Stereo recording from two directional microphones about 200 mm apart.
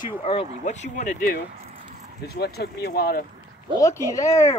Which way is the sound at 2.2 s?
55° left (ahead or behind).